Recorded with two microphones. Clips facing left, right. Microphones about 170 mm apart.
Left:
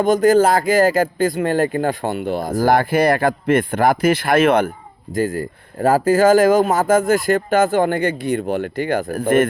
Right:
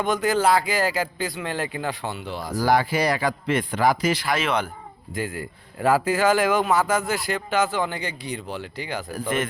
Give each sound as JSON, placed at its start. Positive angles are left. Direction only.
{"t": 0.0, "sound": "speech", "side_deg": 45}